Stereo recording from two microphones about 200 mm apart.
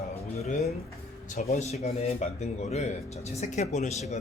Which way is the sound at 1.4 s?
40° left (ahead or behind).